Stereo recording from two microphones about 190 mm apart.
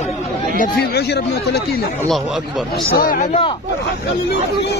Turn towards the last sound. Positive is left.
turn(degrees=35)  # may be behind; listen again after turning